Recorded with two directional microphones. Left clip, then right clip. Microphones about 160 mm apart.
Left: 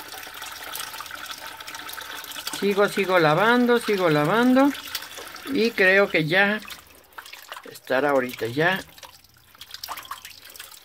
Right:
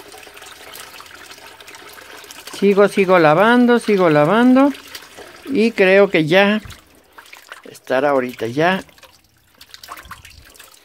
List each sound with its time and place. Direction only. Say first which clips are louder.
2.6 s speech: right 8 dB; 30° right (ahead or behind)
7.8 s speech: right 5 dB; 25° right (ahead or behind)